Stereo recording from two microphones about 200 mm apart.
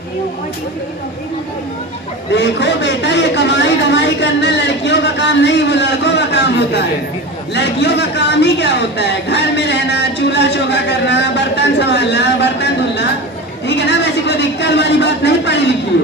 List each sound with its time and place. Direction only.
2.3 s a man's voice: 60° left (ahead or behind)